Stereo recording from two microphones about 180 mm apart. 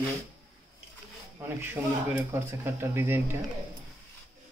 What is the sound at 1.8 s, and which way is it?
Speech, 10° right (ahead or behind).